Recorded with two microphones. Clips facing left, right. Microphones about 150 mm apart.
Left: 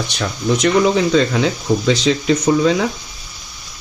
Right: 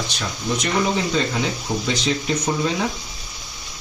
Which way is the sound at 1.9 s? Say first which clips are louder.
Left 7 dB; 90° left.